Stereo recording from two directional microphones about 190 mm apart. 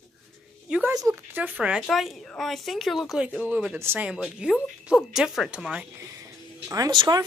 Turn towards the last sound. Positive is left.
turn(degrees=-20)  # may be behind; listen again after turning